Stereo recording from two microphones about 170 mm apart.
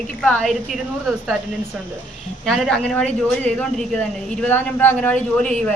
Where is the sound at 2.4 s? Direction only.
Centre (ahead or behind).